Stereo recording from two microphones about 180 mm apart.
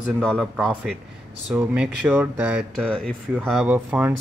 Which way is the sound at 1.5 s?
10° right (ahead or behind).